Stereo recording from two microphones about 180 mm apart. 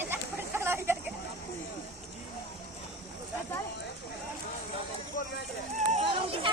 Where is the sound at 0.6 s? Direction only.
15° right (ahead or behind).